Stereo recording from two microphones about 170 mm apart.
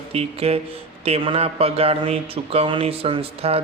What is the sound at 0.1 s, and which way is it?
Speech, 35° right (ahead or behind).